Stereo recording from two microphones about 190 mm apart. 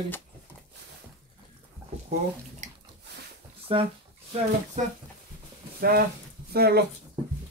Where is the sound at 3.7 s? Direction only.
30° right (ahead or behind).